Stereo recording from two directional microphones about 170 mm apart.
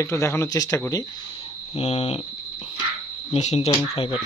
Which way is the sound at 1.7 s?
35° left (ahead or behind).